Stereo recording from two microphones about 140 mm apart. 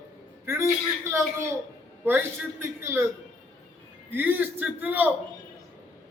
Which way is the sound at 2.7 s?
15° right (ahead or behind).